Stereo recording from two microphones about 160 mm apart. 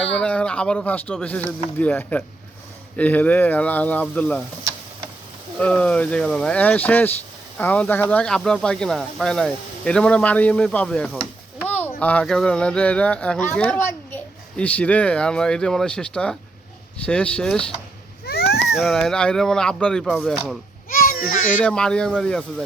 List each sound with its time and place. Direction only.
0.0 s speech: 5° left (ahead or behind)
5.5 s speech: 5° left (ahead or behind)
18.7 s speech: centre (ahead or behind)
20.9 s a sound: 65° left (ahead or behind)
21.6 s speech: 5° left (ahead or behind)